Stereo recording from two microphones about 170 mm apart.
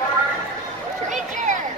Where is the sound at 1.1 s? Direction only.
45° right (ahead or behind).